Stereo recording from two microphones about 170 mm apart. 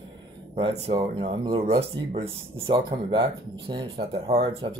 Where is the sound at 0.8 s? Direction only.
35° right (ahead or behind).